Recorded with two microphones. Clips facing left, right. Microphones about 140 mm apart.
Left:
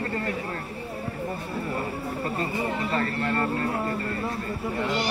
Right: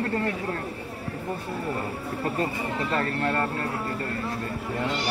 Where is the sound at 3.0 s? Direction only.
40° right (ahead or behind).